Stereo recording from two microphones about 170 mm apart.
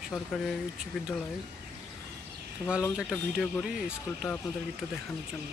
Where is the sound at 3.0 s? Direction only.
5° right (ahead or behind).